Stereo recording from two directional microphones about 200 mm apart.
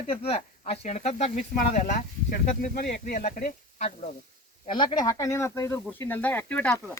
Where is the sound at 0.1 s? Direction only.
30° left (ahead or behind).